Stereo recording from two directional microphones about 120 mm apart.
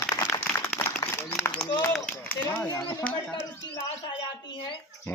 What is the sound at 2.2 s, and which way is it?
Speech, 15° left (ahead or behind).